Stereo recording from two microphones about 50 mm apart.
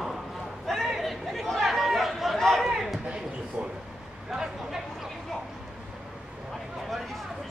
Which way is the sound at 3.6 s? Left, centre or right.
Right.